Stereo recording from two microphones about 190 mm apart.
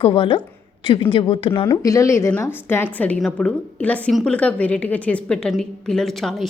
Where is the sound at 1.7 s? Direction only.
15° left (ahead or behind).